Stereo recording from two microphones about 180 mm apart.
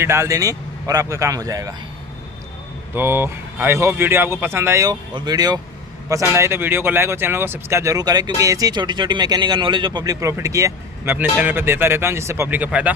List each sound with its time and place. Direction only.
0.0 s speech: 15° right (ahead or behind)
2.9 s speech: 10° right (ahead or behind)